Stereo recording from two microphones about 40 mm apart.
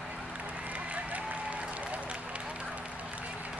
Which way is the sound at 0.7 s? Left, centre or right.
Right.